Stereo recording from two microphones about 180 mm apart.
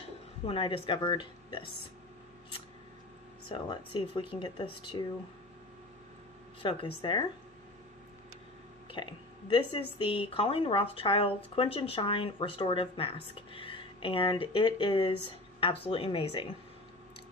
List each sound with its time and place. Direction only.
0.5 s speech: 30° left (ahead or behind)
3.4 s speech: 25° left (ahead or behind)
6.6 s speech: 25° left (ahead or behind)
8.9 s speech: 25° left (ahead or behind)